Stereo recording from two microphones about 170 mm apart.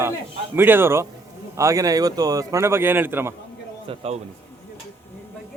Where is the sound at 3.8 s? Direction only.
35° right (ahead or behind).